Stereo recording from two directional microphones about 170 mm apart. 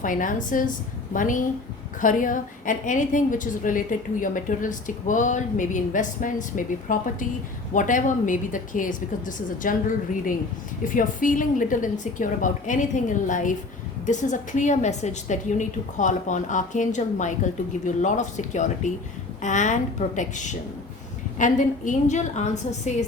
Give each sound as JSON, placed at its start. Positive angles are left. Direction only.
{"t": 0.0, "sound": "a woman's voice", "side_deg": 50}